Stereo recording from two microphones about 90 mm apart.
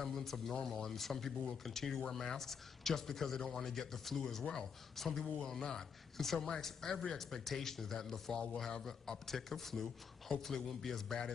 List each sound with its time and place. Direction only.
0.0 s speech: 5° left (ahead or behind)